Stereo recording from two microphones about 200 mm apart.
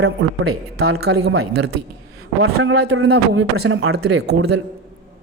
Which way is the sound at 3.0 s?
70° right (ahead or behind).